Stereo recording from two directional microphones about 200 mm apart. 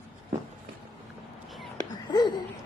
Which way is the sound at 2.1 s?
20° left (ahead or behind).